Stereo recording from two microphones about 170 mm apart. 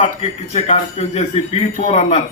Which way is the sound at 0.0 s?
40° left (ahead or behind).